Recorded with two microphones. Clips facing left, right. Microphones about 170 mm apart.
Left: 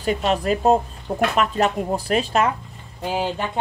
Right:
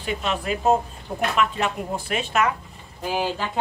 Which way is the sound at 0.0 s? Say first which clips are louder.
Left 6 dB; 40° left (ahead or behind).